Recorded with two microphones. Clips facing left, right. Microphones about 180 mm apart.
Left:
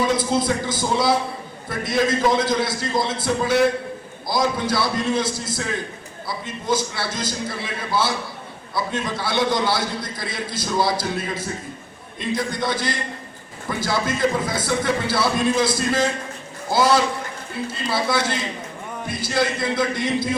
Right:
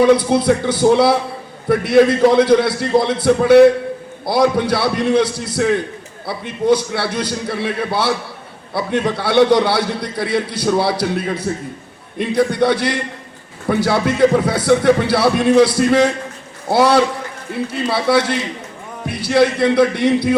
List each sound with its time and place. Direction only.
0.0 s a man's voice: 65° right (ahead or behind)
12.2 s a man's voice: 70° right (ahead or behind)